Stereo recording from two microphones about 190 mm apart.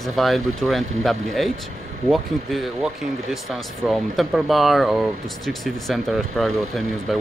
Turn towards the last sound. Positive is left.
turn(degrees=0)  # may be behind; listen again after turning